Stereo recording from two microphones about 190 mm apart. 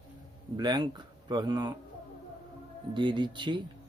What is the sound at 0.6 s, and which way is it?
Speech, 20° right (ahead or behind).